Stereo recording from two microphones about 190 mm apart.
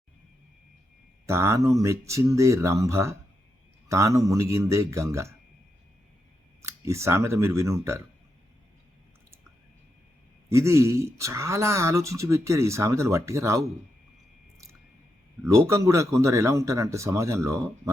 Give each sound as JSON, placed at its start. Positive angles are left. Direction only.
{"t": 1.3, "sound": "speech", "side_deg": -15}
{"t": 6.6, "sound": "speech", "side_deg": -15}
{"t": 10.5, "sound": "speech", "side_deg": -15}
{"t": 15.4, "sound": "speech", "side_deg": -15}